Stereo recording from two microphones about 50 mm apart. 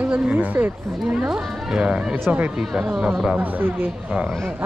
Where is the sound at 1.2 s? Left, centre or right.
Centre.